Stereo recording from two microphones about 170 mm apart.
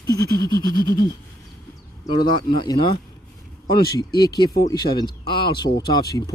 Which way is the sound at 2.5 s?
30° left (ahead or behind).